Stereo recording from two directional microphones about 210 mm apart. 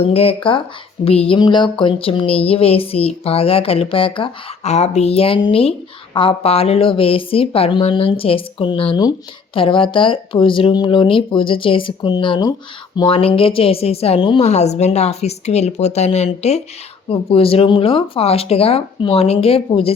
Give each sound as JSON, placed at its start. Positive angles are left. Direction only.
{"t": 0.0, "sound": "a woman's voice", "side_deg": 30}